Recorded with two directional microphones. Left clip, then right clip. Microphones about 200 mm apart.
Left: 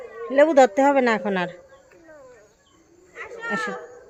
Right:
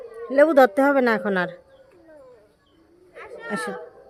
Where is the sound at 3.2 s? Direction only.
60° right (ahead or behind).